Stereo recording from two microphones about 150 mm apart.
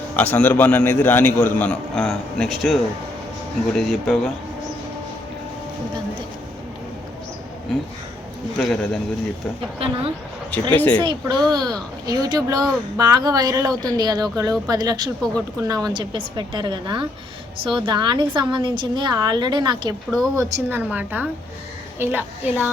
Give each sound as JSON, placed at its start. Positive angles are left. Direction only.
{"t": 0.2, "sound": "a man's voice", "side_deg": 10}
{"t": 8.5, "sound": "speech", "side_deg": 5}
{"t": 9.7, "sound": "a woman's voice", "side_deg": -40}
{"t": 10.8, "sound": "a man's voice", "side_deg": 10}
{"t": 11.0, "sound": "a woman's voice", "side_deg": -30}
{"t": 20.1, "sound": "speech", "side_deg": 0}
{"t": 20.3, "sound": "a woman's voice", "side_deg": -15}